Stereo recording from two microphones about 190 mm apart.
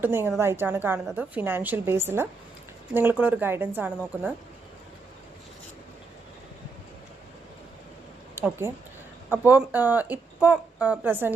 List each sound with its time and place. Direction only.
0.0 s speech: 10° right (ahead or behind)
8.4 s speech: 15° right (ahead or behind)